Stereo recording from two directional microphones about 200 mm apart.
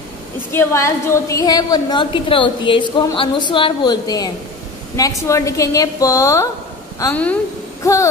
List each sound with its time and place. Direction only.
0.5 s a woman's voice: 15° left (ahead or behind)